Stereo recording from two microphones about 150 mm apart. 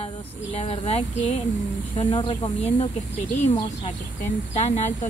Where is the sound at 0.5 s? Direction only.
45° left (ahead or behind).